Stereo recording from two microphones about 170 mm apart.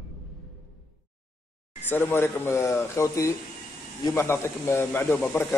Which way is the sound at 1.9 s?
10° left (ahead or behind).